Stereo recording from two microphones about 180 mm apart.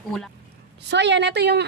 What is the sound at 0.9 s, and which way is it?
Speech, 75° right (ahead or behind).